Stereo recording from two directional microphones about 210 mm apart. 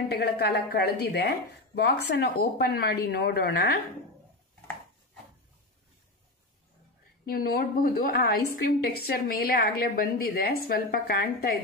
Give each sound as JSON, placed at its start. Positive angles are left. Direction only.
{"t": 0.1, "sound": "a woman's voice", "side_deg": 50}
{"t": 7.2, "sound": "a woman's voice", "side_deg": 45}